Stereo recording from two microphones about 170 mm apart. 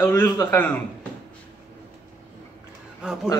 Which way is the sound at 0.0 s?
15° left (ahead or behind).